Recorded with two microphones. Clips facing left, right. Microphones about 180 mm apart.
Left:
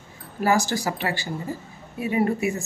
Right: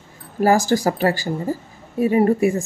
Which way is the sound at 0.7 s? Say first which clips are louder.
Right 8 dB; 45° right (ahead or behind).